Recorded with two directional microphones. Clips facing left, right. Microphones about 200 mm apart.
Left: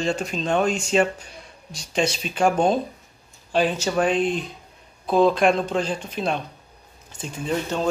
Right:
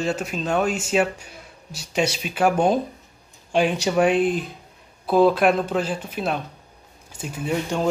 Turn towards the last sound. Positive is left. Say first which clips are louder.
# right 1 dB
turn(degrees=-10)  # may be behind; listen again after turning